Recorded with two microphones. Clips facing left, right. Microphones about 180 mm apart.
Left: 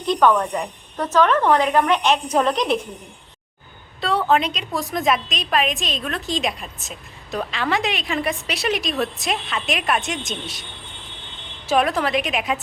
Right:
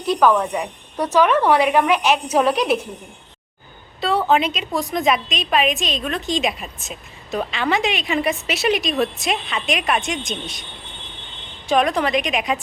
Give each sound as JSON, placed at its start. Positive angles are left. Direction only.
{"t": 0.1, "sound": "a woman's voice", "side_deg": -5}
{"t": 4.0, "sound": "a woman's voice", "side_deg": 0}
{"t": 11.7, "sound": "a woman's voice", "side_deg": 5}